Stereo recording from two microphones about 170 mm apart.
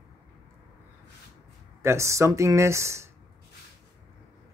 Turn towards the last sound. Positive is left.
turn(degrees=-15)  # may be behind; listen again after turning